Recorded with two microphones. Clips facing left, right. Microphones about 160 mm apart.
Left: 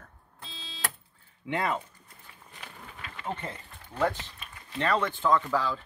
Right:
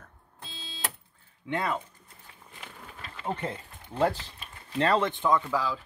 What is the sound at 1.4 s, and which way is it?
Speech, 5° left (ahead or behind).